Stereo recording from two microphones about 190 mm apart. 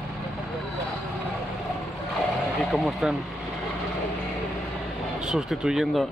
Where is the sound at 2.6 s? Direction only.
Centre (ahead or behind).